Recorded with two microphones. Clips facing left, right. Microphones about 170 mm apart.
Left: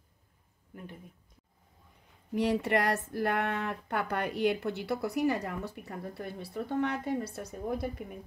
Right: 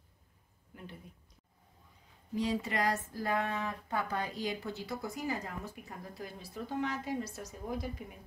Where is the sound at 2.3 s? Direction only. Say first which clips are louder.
Left 6 dB; 65° left (ahead or behind).